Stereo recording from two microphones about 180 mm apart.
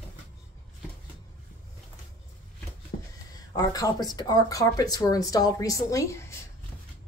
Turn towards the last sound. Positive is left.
turn(degrees=15)  # may be behind; listen again after turning